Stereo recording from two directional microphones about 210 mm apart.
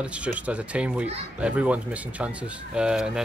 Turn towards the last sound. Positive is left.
turn(degrees=-5)  # may be behind; listen again after turning